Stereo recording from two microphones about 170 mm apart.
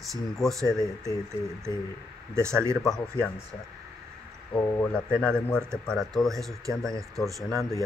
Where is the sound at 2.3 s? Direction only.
15° right (ahead or behind).